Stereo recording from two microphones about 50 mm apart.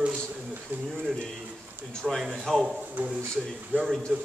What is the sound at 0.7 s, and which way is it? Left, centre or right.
Speech, right.